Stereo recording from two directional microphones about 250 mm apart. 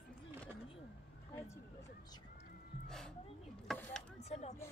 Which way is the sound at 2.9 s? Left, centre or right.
Centre.